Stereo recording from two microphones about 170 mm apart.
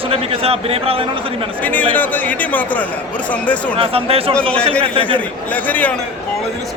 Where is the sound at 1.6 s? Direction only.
10° left (ahead or behind).